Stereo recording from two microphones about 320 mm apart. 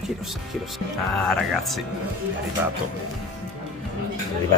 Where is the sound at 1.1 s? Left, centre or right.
Centre.